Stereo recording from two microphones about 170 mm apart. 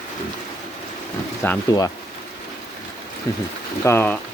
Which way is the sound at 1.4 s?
10° left (ahead or behind).